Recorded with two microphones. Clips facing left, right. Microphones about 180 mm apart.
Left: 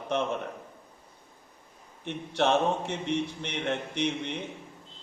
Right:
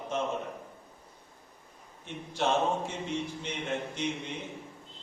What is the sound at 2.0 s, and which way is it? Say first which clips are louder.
A man's voice: left 4 dB; 65° left (ahead or behind).